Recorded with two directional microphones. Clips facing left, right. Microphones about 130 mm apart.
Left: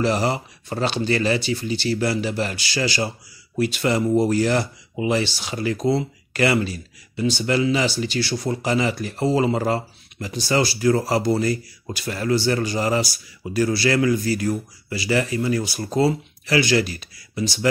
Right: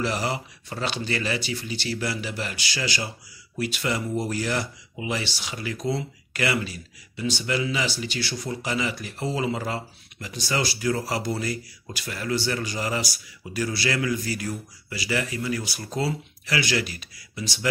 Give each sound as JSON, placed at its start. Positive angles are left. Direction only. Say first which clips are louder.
{"t": 0.0, "sound": "speech", "louder": "left 6 dB", "side_deg": 30}